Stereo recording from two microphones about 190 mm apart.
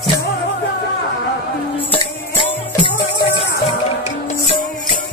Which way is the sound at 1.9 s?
25° left (ahead or behind).